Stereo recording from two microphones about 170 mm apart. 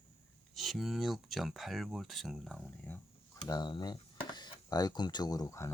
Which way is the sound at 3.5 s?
25° left (ahead or behind).